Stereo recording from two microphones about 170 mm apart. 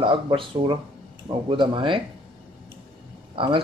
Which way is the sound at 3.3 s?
30° right (ahead or behind).